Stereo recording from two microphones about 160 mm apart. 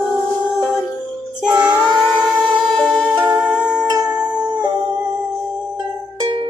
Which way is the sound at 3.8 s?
25° right (ahead or behind).